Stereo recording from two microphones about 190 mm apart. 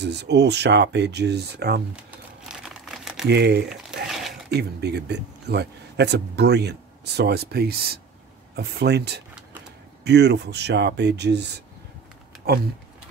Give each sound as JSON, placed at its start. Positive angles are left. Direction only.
{"t": 0.0, "sound": "speech", "side_deg": -60}
{"t": 2.0, "sound": "crumpling", "side_deg": -5}
{"t": 3.3, "sound": "speech", "side_deg": -60}